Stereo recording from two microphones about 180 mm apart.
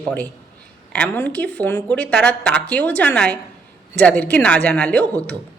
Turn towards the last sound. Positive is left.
turn(degrees=10)  # may be behind; listen again after turning